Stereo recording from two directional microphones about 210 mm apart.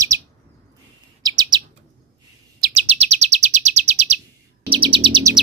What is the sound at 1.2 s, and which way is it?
Chirp, 20° right (ahead or behind).